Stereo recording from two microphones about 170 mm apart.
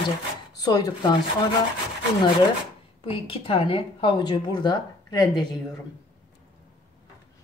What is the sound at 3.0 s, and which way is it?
A woman's voice, 30° left (ahead or behind).